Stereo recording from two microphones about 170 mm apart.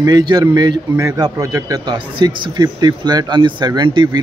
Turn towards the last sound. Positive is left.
turn(degrees=-25)  # may be behind; listen again after turning